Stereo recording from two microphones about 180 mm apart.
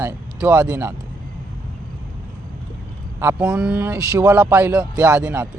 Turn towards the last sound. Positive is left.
turn(degrees=-10)  # may be behind; listen again after turning